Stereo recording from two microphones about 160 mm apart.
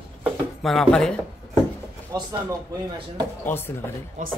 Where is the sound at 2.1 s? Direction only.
25° right (ahead or behind).